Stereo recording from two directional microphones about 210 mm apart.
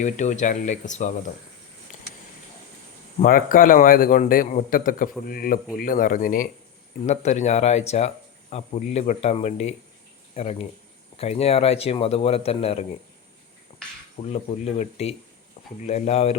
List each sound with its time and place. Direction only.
0.0 s speech: 35° left (ahead or behind)
3.2 s speech: 40° left (ahead or behind)
14.2 s speech: 30° left (ahead or behind)